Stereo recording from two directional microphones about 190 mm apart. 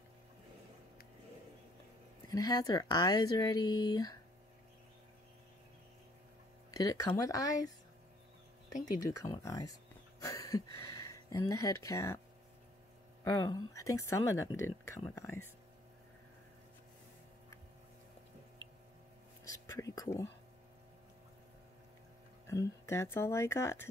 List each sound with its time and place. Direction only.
2.2 s speech: 20° left (ahead or behind)
6.7 s speech: 20° left (ahead or behind)
8.8 s speech: 20° left (ahead or behind)
10.2 s a sound: 15° left (ahead or behind)
11.1 s speech: 15° left (ahead or behind)
13.2 s speech: 15° left (ahead or behind)
19.5 s a sound: 15° left (ahead or behind)
22.5 s speech: 15° left (ahead or behind)